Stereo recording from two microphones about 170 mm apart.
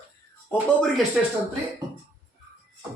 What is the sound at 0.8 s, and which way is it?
Speech, centre (ahead or behind).